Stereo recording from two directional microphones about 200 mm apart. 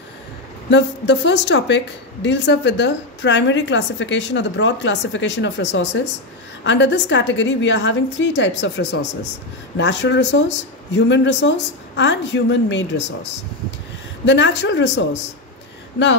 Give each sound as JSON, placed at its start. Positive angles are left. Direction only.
{"t": 0.7, "sound": "a woman's voice", "side_deg": 65}
{"t": 14.2, "sound": "a woman's voice", "side_deg": 60}